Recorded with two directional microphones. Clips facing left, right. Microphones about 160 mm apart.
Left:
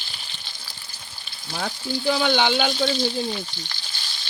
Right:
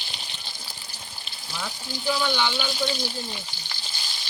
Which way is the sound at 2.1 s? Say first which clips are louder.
Left 4 dB; 65° left (ahead or behind).